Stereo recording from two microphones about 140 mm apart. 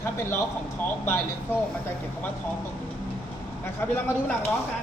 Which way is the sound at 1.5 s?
15° left (ahead or behind).